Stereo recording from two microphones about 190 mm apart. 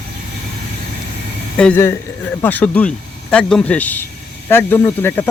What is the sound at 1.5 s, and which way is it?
Speech, 5° left (ahead or behind).